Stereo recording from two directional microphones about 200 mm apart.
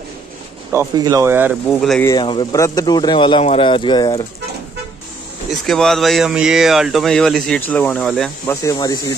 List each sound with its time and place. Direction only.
0.7 s speech: 15° right (ahead or behind); by 2.0 s centre (ahead or behind)
2.0 s speech: 25° left (ahead or behind)
5.7 s speech: centre (ahead or behind)
8.6 s speech: 20° left (ahead or behind)